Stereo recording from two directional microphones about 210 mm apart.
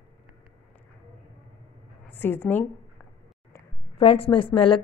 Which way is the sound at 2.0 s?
10° left (ahead or behind).